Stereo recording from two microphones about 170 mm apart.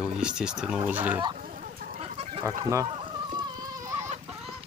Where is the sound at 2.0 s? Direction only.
35° right (ahead or behind).